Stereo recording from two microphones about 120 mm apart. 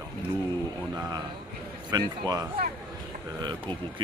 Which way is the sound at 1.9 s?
35° right (ahead or behind).